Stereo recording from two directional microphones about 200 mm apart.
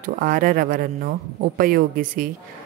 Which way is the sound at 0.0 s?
45° right (ahead or behind).